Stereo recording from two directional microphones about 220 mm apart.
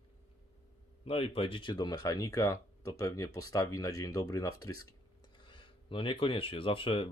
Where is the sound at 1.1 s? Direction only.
25° left (ahead or behind).